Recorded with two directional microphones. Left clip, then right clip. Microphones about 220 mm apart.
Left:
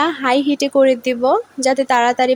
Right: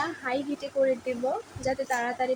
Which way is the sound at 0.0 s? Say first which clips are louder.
Left 14 dB; 55° left (ahead or behind).